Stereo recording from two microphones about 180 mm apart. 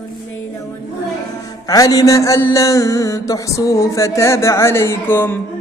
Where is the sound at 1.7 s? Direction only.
20° left (ahead or behind).